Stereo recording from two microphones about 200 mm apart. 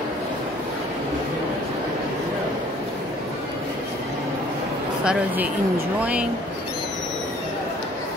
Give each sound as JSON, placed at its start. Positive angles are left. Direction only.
{"t": 5.0, "sound": "speech", "side_deg": -10}